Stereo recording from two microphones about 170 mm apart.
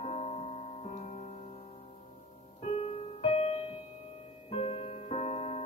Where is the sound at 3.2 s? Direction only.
40° left (ahead or behind).